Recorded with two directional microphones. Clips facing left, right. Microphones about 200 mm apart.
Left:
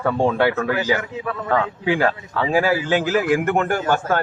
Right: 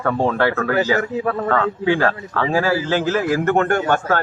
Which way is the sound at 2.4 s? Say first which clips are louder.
Even; 15° left (ahead or behind).